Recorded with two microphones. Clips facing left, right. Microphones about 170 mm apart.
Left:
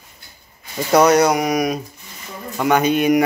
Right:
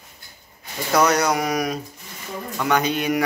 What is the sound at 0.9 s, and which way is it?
Speech, 20° left (ahead or behind).